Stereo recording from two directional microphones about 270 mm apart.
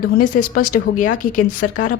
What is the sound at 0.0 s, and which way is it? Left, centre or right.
A woman's voice, left.